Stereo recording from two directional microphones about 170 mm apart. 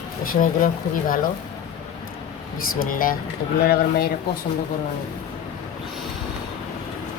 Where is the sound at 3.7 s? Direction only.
70° left (ahead or behind).